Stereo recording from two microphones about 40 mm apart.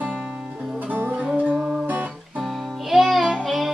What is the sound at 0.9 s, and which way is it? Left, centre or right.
Music, right.